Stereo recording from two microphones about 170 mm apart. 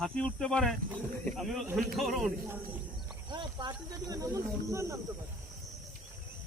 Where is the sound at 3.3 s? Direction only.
25° right (ahead or behind).